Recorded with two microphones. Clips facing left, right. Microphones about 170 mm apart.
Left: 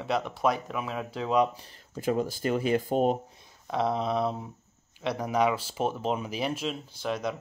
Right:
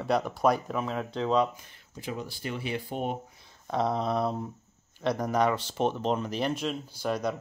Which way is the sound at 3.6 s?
Centre (ahead or behind).